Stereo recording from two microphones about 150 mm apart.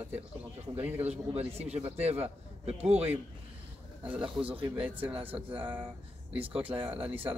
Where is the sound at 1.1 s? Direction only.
45° right (ahead or behind).